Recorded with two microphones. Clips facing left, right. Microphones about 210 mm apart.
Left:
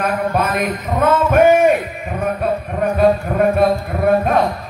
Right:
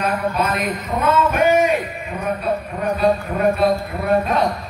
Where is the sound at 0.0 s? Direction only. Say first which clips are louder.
Left 2 dB; 50° left (ahead or behind).